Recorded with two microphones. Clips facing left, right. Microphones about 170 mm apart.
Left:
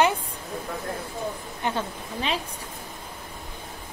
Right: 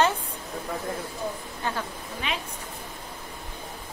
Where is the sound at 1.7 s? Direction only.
30° left (ahead or behind).